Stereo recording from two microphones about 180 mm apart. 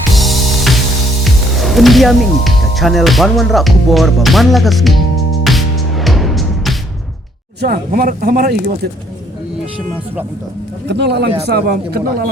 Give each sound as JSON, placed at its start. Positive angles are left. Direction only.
{"t": 0.1, "sound": "music", "side_deg": 0}
{"t": 1.2, "sound": "speech", "side_deg": 0}
{"t": 5.4, "sound": "music", "side_deg": 0}
{"t": 7.6, "sound": "speech", "side_deg": -55}
{"t": 10.8, "sound": "speech", "side_deg": -70}
{"t": 11.4, "sound": "speech", "side_deg": -60}